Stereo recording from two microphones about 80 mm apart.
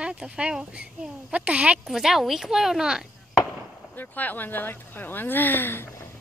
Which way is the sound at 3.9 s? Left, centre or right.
Left.